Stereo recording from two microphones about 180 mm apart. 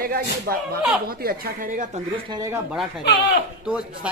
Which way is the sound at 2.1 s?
25° right (ahead or behind).